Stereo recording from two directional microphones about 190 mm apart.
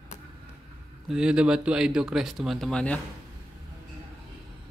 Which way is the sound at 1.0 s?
5° right (ahead or behind).